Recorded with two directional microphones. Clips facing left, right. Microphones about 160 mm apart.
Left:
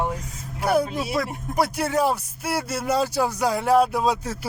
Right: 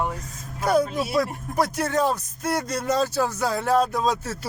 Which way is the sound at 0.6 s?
10° left (ahead or behind).